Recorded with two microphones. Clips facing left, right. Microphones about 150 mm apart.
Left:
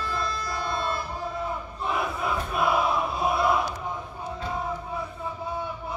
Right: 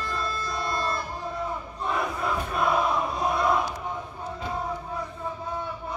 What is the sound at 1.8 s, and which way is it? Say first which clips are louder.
Crowd: even; 5° left (ahead or behind).